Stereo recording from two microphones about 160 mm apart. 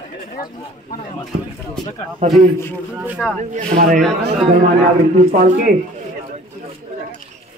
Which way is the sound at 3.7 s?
55° right (ahead or behind).